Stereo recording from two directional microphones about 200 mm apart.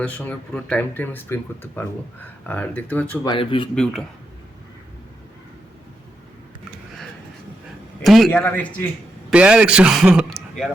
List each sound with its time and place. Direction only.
0.0 s speech: 5° left (ahead or behind)
3.2 s speech: 25° left (ahead or behind)
8.0 s speech: centre (ahead or behind)
9.3 s a man's voice: 5° right (ahead or behind)